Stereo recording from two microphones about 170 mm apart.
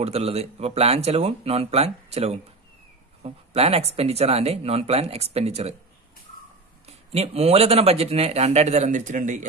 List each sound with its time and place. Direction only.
0.0 s speech: 35° right (ahead or behind)
6.9 s speech: 35° right (ahead or behind)